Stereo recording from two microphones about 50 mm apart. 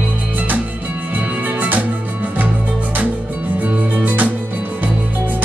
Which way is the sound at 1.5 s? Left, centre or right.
Right.